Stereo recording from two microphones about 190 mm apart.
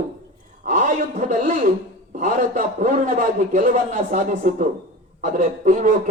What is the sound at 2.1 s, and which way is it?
A man's voice, 40° right (ahead or behind).